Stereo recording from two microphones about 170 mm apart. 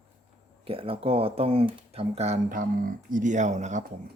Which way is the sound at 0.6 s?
35° right (ahead or behind).